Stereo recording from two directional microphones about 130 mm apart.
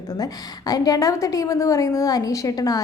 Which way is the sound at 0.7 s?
25° left (ahead or behind).